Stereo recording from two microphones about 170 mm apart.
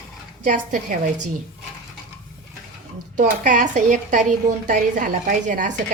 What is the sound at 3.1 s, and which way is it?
Speech, 50° right (ahead or behind).